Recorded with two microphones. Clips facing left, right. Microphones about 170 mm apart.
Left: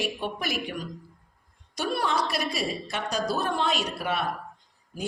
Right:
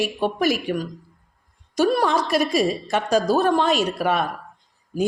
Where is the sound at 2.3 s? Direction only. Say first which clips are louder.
Right 9 dB; 45° right (ahead or behind).